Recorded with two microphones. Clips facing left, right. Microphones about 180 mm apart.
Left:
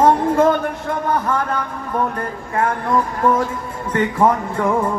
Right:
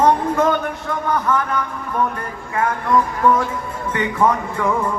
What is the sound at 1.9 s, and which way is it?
Speech, 35° left (ahead or behind).